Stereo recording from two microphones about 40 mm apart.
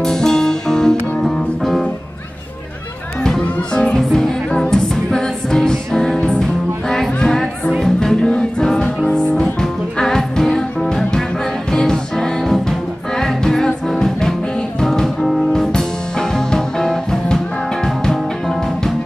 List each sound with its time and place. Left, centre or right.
0.0 s music: centre
3.3 s music: centre